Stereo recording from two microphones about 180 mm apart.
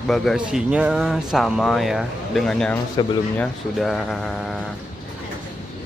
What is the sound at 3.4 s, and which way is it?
Speech, centre (ahead or behind).